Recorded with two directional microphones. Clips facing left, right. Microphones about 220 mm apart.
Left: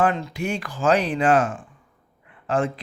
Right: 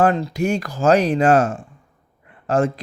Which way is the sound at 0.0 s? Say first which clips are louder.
Right 5 dB; 35° right (ahead or behind).